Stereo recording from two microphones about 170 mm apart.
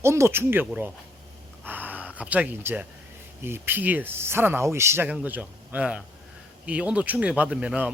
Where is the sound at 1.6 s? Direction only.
10° right (ahead or behind).